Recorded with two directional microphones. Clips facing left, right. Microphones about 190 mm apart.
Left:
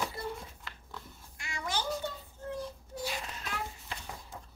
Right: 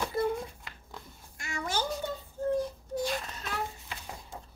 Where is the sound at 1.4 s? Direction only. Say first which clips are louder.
Right 3 dB; 45° right (ahead or behind).